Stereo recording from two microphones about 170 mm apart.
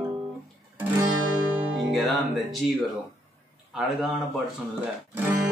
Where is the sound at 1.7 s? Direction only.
Centre (ahead or behind).